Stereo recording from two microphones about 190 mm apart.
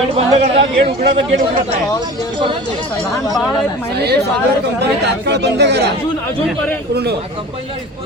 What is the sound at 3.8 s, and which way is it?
Speech, 60° right (ahead or behind).